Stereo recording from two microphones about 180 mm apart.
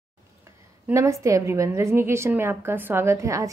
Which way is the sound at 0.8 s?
15° right (ahead or behind).